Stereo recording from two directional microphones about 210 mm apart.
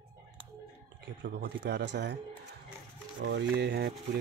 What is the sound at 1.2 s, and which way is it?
Speech, 55° right (ahead or behind).